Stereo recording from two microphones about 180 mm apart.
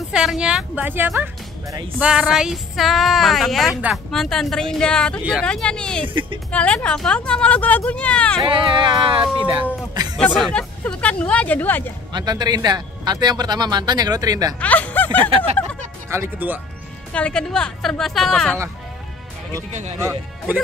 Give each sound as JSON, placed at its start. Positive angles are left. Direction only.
{"t": 0.1, "sound": "speech", "side_deg": -5}
{"t": 6.0, "sound": "speech", "side_deg": -30}
{"t": 6.5, "sound": "speech", "side_deg": 5}
{"t": 8.5, "sound": "speech", "side_deg": -30}
{"t": 10.1, "sound": "speech", "side_deg": 5}
{"t": 12.1, "sound": "speech", "side_deg": -25}
{"t": 14.6, "sound": "a sound", "side_deg": 10}
{"t": 16.1, "sound": "speech", "side_deg": -10}
{"t": 17.1, "sound": "speech", "side_deg": 5}
{"t": 20.0, "sound": "speech", "side_deg": -10}